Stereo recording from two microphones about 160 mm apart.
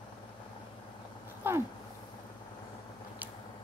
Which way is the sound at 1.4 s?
15° right (ahead or behind).